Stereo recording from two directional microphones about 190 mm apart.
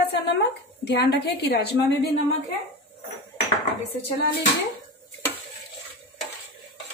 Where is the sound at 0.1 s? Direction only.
60° left (ahead or behind).